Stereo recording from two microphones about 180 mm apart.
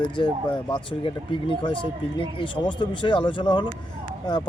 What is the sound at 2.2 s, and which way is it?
Speech, 25° left (ahead or behind).